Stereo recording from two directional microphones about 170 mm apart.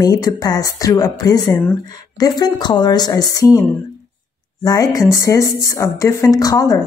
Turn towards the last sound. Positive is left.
turn(degrees=20)  # may be behind; listen again after turning